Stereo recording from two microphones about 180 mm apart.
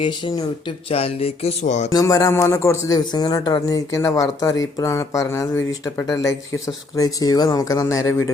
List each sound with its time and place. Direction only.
0.0 s a man's voice: 25° left (ahead or behind)
0.9 s a sound: 30° left (ahead or behind)
1.9 s a man's voice: 20° left (ahead or behind)